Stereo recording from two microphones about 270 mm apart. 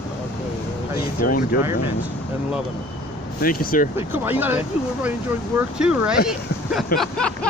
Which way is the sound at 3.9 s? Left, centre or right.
Centre.